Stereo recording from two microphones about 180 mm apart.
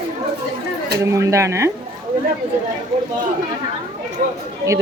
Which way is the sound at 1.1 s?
15° right (ahead or behind).